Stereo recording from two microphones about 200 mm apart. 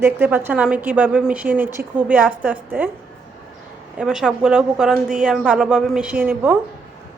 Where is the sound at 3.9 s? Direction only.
5° right (ahead or behind).